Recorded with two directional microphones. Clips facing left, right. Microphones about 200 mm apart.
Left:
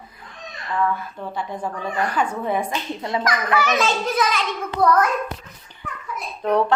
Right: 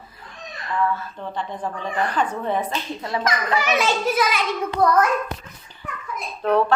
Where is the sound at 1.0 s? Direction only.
10° left (ahead or behind).